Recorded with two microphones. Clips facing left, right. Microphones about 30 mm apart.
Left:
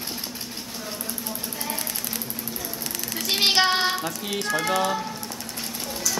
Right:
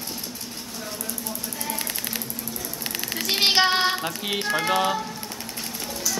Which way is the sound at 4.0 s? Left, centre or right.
Right.